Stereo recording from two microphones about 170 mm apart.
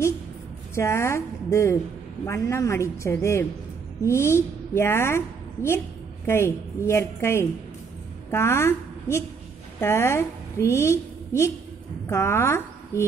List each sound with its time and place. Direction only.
0.7 s a woman's voice: 15° left (ahead or behind)